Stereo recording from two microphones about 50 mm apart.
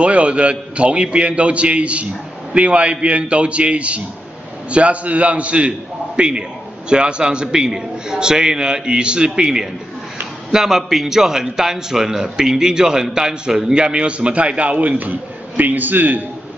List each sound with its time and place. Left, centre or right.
0.0 s a man's voice: right